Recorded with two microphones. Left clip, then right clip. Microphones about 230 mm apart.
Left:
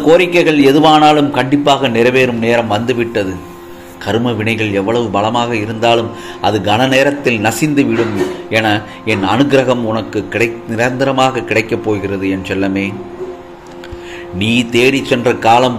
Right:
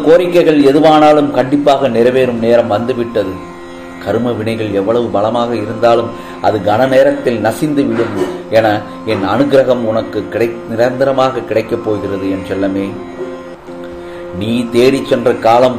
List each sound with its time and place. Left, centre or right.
0.0 s a man's voice: left
14.4 s a man's voice: left